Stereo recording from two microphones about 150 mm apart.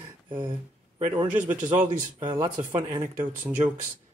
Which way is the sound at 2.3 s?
30° right (ahead or behind).